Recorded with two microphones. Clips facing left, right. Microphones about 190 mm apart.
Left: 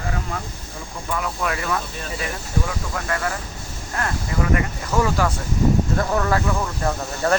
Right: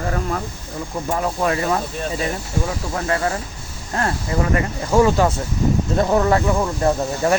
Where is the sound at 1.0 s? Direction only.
35° right (ahead or behind).